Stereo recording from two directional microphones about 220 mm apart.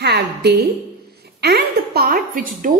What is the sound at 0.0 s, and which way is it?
A woman's voice, 50° right (ahead or behind).